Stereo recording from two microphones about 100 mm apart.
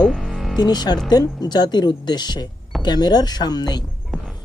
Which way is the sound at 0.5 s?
45° left (ahead or behind).